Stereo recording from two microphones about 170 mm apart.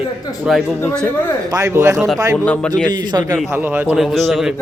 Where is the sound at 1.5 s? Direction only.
20° right (ahead or behind).